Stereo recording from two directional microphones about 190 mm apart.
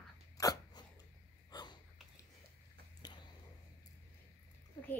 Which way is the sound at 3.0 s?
20° left (ahead or behind).